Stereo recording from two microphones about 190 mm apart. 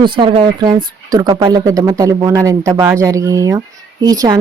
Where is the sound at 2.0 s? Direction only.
20° right (ahead or behind).